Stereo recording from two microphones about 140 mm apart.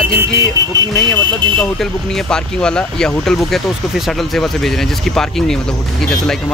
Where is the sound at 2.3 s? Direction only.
5° left (ahead or behind).